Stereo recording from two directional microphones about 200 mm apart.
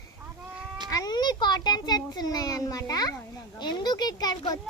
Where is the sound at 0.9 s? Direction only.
20° left (ahead or behind).